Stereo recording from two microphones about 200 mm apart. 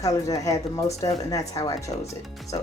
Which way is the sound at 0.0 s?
15° left (ahead or behind).